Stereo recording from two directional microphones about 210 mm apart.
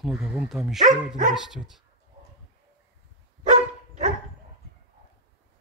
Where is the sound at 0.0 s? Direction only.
Centre (ahead or behind).